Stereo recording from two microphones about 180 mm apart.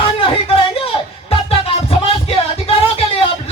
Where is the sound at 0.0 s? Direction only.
30° left (ahead or behind).